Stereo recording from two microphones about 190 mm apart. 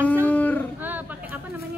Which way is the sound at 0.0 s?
10° right (ahead or behind).